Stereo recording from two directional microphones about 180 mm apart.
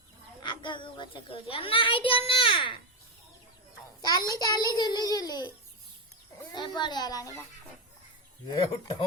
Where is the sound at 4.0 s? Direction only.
20° left (ahead or behind).